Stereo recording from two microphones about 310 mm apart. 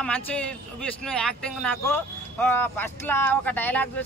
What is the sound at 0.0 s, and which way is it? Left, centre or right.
Speech, centre.